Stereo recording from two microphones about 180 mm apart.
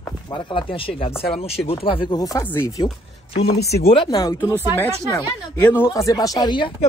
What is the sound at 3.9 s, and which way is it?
Speech, 25° left (ahead or behind).